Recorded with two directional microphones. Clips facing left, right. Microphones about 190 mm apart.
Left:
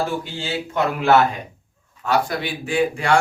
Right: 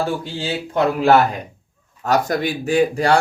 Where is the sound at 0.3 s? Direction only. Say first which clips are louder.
Right 4 dB; 35° right (ahead or behind).